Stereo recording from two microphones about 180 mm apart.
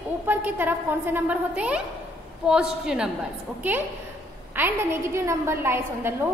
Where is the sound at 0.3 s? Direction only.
10° right (ahead or behind).